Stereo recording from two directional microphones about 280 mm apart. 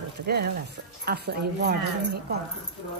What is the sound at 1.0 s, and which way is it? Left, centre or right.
Speech, right.